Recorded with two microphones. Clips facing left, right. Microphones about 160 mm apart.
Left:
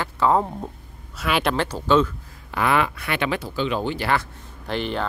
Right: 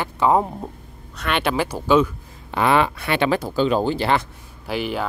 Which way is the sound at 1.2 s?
Centre (ahead or behind).